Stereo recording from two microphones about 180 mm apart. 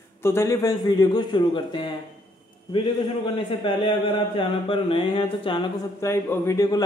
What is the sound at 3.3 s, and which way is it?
Mantra, 30° left (ahead or behind).